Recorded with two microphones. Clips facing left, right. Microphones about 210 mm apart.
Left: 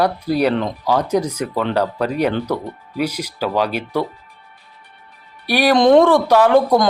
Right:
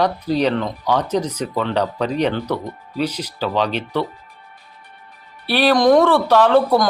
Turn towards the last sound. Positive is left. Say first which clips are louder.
# left 1 dB
turn(degrees=15)  # may be behind; listen again after turning